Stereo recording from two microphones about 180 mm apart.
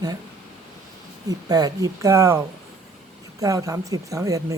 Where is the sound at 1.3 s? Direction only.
20° right (ahead or behind).